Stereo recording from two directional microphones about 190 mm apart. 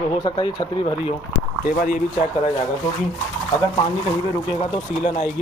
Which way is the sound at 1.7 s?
45° left (ahead or behind).